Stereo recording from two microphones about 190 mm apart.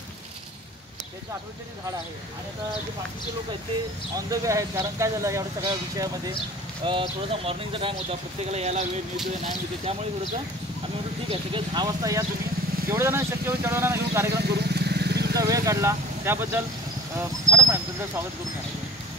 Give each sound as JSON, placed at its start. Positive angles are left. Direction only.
{"t": 4.3, "sound": "speech", "side_deg": -15}
{"t": 11.2, "sound": "speech", "side_deg": -25}
{"t": 14.4, "sound": "vehicle", "side_deg": -55}
{"t": 15.3, "sound": "speech", "side_deg": -20}